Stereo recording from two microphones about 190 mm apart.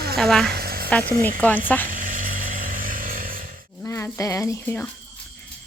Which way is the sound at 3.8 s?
15° left (ahead or behind).